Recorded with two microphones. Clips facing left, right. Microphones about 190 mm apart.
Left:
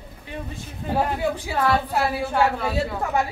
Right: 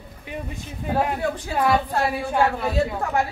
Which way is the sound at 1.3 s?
10° left (ahead or behind).